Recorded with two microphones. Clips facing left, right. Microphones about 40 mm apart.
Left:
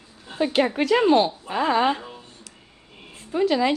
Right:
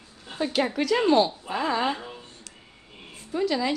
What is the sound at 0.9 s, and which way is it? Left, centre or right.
A woman's voice, centre.